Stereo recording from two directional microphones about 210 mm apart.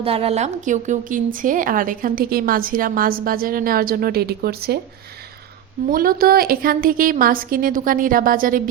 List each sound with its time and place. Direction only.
0.0 s speech: 25° right (ahead or behind); by 4.8 s 50° right (ahead or behind)
5.9 s a woman's voice: 45° right (ahead or behind)